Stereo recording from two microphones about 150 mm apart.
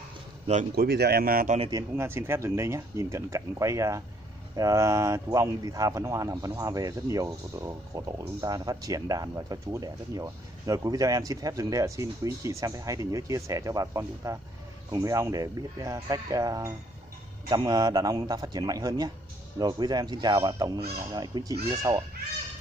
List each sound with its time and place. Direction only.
0.7 s speech: 90° right; by 1.6 s 70° right (ahead or behind)
1.7 s speech: 20° right (ahead or behind)